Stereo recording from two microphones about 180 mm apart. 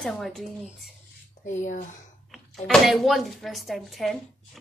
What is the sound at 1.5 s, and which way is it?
Speech, 45° left (ahead or behind).